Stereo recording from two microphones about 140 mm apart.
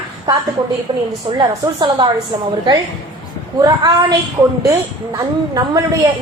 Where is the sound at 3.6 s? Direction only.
30° right (ahead or behind).